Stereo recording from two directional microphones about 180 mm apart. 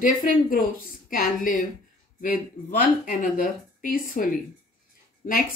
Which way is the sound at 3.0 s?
45° left (ahead or behind).